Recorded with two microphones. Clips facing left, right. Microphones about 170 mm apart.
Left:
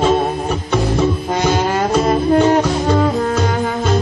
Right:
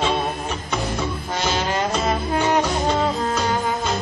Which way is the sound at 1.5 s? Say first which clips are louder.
Left 6 dB; 50° left (ahead or behind).